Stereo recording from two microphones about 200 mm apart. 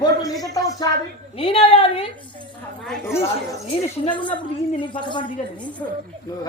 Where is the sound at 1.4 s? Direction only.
25° left (ahead or behind).